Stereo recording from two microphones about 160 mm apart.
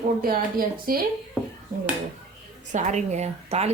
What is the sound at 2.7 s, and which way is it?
A woman's voice, 50° right (ahead or behind).